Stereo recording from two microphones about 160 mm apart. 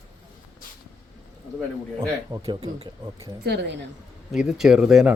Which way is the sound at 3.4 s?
90° right.